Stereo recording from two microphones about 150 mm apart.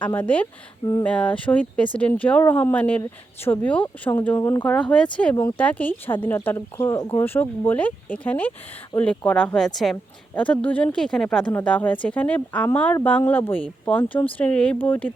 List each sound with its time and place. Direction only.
0.0 s speech: 10° left (ahead or behind)